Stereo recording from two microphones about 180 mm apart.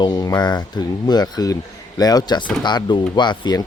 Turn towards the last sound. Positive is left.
turn(degrees=25)  # may be behind; listen again after turning